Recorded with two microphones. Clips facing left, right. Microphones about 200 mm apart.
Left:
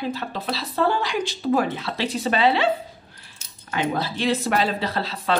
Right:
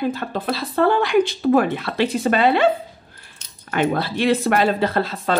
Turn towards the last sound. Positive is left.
turn(degrees=-50)  # may be behind; listen again after turning